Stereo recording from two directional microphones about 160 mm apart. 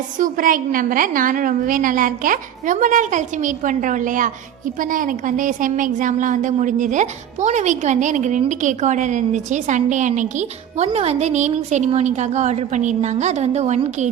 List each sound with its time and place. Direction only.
0.2 s a woman's voice: 60° right (ahead or behind)